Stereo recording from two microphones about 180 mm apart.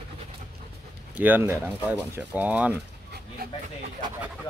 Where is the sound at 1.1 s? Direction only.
10° right (ahead or behind).